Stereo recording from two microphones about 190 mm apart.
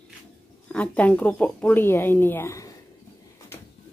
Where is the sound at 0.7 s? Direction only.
5° left (ahead or behind).